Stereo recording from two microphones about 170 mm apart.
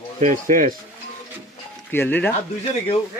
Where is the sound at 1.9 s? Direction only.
10° left (ahead or behind).